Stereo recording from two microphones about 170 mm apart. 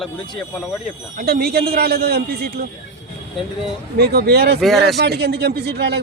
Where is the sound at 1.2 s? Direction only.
65° right (ahead or behind).